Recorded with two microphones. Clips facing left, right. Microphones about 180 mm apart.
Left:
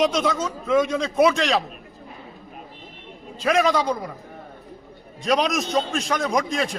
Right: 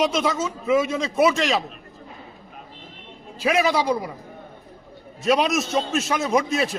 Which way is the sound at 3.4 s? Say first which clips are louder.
Left 1 dB; 5° right (ahead or behind).